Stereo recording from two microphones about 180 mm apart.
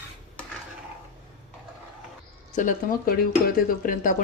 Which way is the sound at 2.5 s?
45° left (ahead or behind).